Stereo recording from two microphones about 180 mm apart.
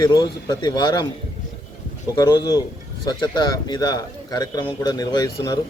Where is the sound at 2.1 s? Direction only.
25° left (ahead or behind).